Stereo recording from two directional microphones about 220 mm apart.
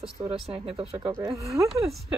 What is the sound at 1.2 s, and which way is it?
Speech, 15° right (ahead or behind).